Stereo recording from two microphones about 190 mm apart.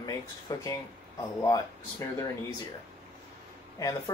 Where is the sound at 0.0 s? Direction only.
20° left (ahead or behind).